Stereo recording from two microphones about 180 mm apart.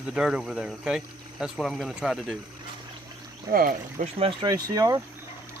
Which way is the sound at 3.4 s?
50° right (ahead or behind).